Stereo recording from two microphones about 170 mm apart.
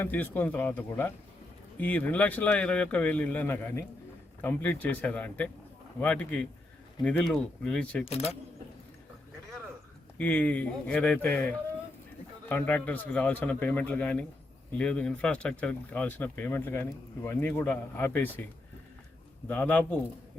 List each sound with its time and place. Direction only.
0.0 s speech: 10° left (ahead or behind)
8.0 s speech: 35° left (ahead or behind)
10.2 s speech: 10° left (ahead or behind)
19.5 s speech: 10° left (ahead or behind)